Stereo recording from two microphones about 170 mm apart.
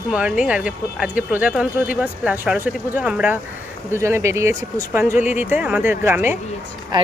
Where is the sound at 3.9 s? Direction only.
15° right (ahead or behind).